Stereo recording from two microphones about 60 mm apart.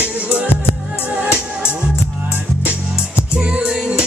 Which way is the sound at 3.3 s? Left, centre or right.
Centre.